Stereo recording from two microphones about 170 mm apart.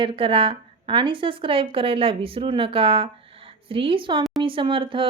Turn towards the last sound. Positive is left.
turn(degrees=-30)  # may be behind; listen again after turning